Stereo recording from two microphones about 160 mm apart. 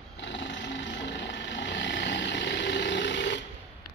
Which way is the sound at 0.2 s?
90° left.